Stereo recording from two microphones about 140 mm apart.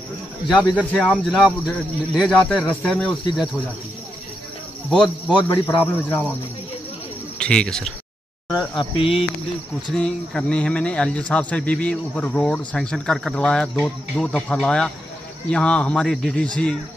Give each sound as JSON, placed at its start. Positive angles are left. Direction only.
{"t": 1.1, "sound": "speech", "side_deg": 0}
{"t": 4.9, "sound": "speech", "side_deg": 5}
{"t": 7.3, "sound": "speech", "side_deg": 5}
{"t": 8.9, "sound": "cricket", "side_deg": 40}
{"t": 9.9, "sound": "speech", "side_deg": 5}